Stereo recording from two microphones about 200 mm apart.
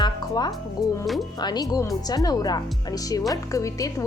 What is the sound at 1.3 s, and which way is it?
A woman's voice, 20° left (ahead or behind).